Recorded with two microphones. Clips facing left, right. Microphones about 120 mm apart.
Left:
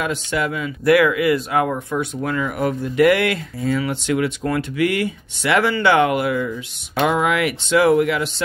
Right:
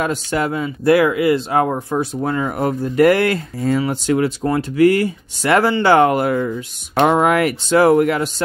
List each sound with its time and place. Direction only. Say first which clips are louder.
0.0 s speech: right 3 dB; 40° right (ahead or behind)